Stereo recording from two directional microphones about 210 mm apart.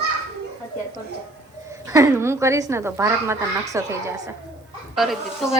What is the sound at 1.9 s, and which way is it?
Speech, 15° right (ahead or behind).